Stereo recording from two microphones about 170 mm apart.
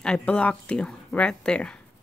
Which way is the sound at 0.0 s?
5° left (ahead or behind).